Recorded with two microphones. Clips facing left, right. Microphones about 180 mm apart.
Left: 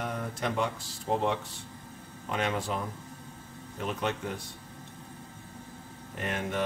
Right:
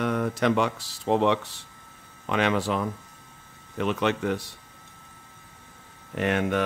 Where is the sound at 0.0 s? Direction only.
85° right.